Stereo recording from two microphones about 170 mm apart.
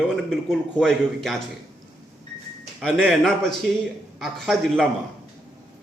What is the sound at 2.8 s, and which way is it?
A man's voice, 5° left (ahead or behind).